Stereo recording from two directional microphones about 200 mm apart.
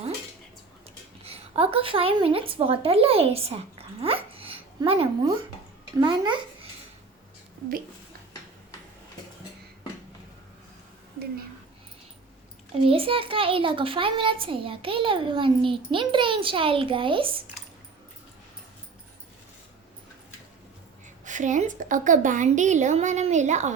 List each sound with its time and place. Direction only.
1.2 s a woman's voice: 30° right (ahead or behind)
12.7 s a child's voice: 30° right (ahead or behind)
21.2 s a woman's voice: 40° right (ahead or behind)